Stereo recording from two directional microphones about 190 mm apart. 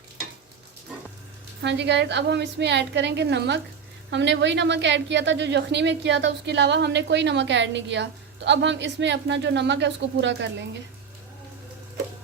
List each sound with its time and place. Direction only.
1.6 s a woman's voice: 65° right (ahead or behind)